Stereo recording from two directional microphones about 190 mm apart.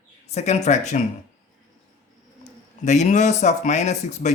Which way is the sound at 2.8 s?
40° left (ahead or behind).